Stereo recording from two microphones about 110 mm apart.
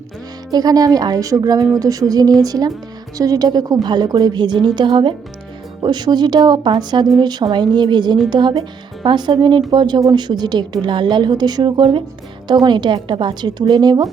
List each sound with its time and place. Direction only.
0.5 s a woman's voice: 35° right (ahead or behind)